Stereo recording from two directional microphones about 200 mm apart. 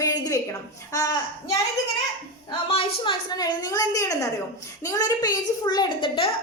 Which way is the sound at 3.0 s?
20° left (ahead or behind).